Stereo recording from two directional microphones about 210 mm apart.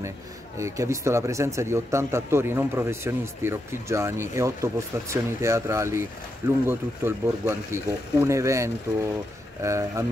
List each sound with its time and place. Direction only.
0.6 s speech: 15° right (ahead or behind)